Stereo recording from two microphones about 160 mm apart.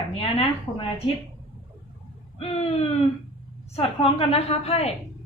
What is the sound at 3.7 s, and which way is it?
A woman's voice, 40° left (ahead or behind).